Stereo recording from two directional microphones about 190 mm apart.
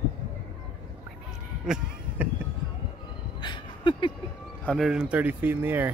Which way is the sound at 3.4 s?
25° left (ahead or behind).